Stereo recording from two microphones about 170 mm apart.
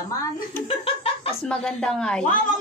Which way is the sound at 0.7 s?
35° left (ahead or behind).